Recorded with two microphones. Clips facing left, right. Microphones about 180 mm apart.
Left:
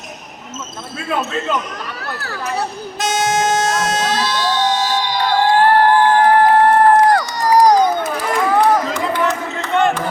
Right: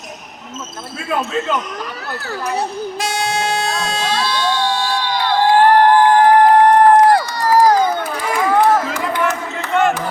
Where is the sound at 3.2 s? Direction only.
45° left (ahead or behind).